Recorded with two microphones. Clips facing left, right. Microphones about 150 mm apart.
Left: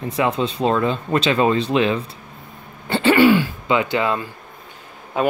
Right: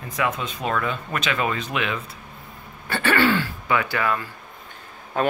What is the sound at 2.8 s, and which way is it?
Speech, 20° left (ahead or behind).